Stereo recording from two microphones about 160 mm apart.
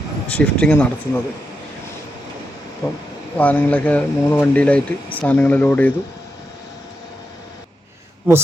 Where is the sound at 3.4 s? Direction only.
10° left (ahead or behind).